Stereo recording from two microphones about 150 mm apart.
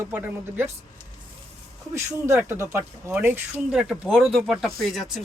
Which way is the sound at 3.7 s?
Centre (ahead or behind).